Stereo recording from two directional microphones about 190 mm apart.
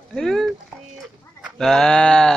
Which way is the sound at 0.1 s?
Centre (ahead or behind).